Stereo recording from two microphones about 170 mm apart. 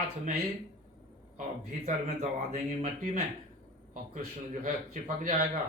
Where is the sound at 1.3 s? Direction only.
45° right (ahead or behind).